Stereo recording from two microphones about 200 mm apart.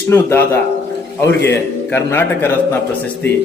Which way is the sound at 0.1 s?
10° left (ahead or behind).